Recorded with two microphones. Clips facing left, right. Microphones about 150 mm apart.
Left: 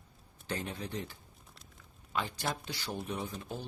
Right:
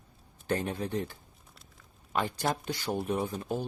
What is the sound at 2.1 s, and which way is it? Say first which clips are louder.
Speech: right 5 dB; 45° right (ahead or behind).